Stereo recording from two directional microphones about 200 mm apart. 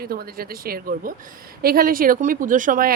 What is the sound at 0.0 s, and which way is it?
A woman's voice, 50° right (ahead or behind).